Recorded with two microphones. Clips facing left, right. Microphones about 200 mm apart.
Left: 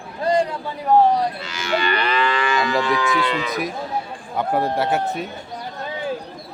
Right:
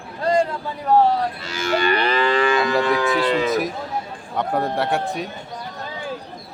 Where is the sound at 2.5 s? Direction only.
55° right (ahead or behind).